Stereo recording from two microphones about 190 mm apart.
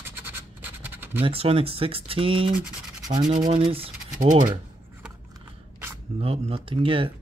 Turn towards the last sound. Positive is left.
turn(degrees=-25)  # may be behind; listen again after turning